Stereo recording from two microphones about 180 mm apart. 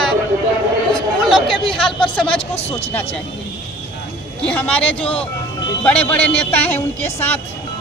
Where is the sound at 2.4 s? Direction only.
35° left (ahead or behind).